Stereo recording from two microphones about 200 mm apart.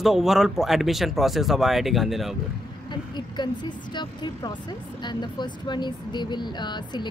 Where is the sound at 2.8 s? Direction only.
20° left (ahead or behind).